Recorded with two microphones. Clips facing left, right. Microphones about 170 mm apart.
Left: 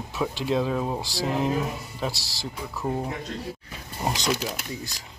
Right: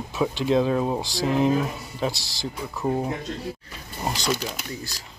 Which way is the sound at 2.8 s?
10° right (ahead or behind).